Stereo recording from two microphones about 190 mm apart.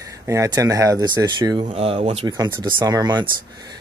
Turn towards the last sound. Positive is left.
turn(degrees=-20)  # may be behind; listen again after turning